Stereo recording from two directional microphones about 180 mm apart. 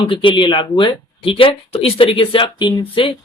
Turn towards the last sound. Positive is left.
turn(degrees=30)  # may be behind; listen again after turning